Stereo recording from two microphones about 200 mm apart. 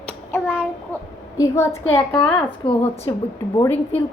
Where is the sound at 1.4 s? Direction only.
15° left (ahead or behind).